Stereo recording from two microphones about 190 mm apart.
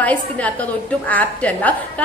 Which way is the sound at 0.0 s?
5° left (ahead or behind).